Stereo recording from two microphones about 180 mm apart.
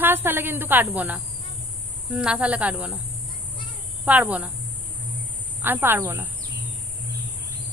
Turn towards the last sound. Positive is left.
turn(degrees=-10)  # may be behind; listen again after turning